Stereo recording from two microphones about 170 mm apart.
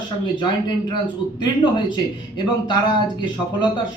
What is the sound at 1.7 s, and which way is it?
Speech, 25° left (ahead or behind).